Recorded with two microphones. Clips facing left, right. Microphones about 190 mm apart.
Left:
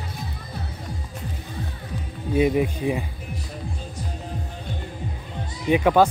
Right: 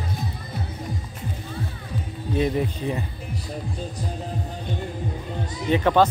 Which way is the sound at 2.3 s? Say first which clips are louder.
Left 3 dB; 10° left (ahead or behind).